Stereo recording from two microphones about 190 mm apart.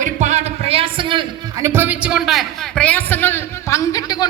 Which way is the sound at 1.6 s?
10° right (ahead or behind).